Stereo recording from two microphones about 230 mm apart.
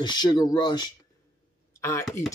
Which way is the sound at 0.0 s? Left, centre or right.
Centre.